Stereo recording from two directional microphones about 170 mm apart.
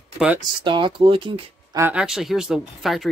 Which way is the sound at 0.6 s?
30° right (ahead or behind).